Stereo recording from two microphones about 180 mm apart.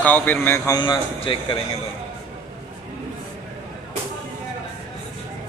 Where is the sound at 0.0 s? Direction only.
10° left (ahead or behind).